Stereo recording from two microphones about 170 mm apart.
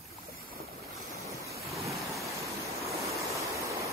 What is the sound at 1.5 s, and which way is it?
Waves, centre (ahead or behind).